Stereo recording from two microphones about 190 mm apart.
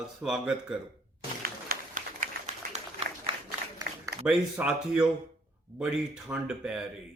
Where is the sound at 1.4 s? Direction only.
50° right (ahead or behind).